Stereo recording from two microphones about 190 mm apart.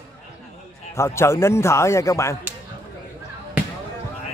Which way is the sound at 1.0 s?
15° left (ahead or behind).